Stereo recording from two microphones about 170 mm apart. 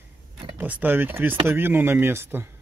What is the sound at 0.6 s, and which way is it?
A man's voice, 10° right (ahead or behind).